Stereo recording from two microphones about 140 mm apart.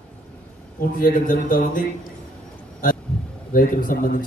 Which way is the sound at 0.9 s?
80° left.